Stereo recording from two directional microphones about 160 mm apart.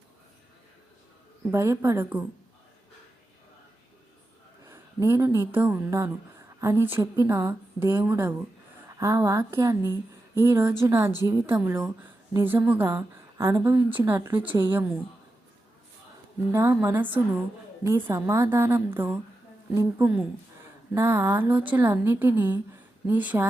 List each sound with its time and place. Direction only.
1.5 s speech: 15° right (ahead or behind)
4.6 s a sound: 20° right (ahead or behind)
5.5 s speech: 10° right (ahead or behind)
16.5 s speech: 15° right (ahead or behind)